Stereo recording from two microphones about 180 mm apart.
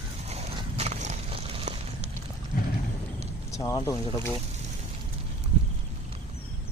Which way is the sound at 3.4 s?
15° left (ahead or behind).